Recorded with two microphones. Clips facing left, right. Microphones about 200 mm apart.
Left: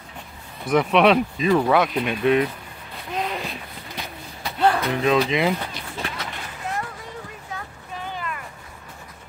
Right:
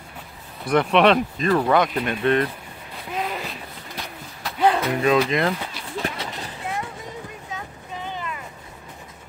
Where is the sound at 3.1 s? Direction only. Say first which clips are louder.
Left 1 dB; 5° right (ahead or behind).